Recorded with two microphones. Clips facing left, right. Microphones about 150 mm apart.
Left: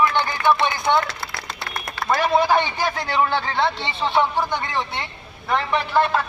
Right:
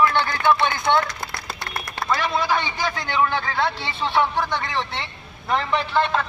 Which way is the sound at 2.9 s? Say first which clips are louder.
Even; 35° left (ahead or behind).